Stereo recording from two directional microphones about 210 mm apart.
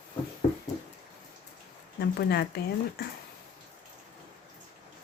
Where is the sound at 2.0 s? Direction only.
50° left (ahead or behind).